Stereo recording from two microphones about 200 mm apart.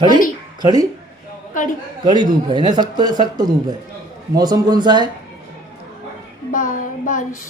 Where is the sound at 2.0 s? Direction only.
20° right (ahead or behind).